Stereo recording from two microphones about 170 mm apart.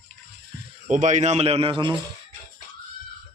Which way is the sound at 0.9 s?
45° right (ahead or behind).